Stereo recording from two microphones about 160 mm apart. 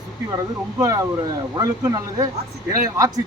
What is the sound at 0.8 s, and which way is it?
A man's voice, 20° right (ahead or behind).